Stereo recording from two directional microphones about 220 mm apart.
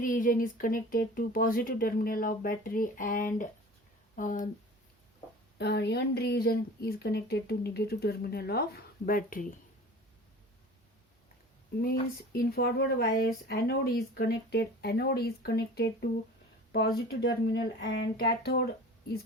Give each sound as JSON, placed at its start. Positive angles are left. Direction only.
{"t": 0.0, "sound": "speech", "side_deg": 40}
{"t": 5.5, "sound": "speech", "side_deg": 50}
{"t": 11.8, "sound": "speech", "side_deg": 40}